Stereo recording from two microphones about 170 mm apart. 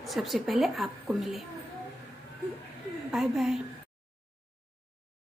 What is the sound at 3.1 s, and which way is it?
Speech, centre (ahead or behind).